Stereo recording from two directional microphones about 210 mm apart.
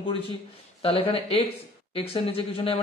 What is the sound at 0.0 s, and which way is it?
A man's voice, 25° left (ahead or behind).